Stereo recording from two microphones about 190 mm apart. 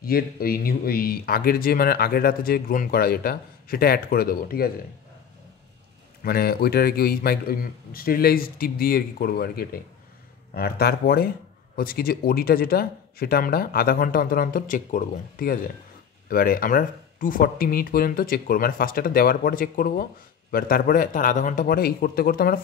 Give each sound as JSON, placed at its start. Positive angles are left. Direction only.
{"t": 0.0, "sound": "speech", "side_deg": 50}
{"t": 6.2, "sound": "speech", "side_deg": 55}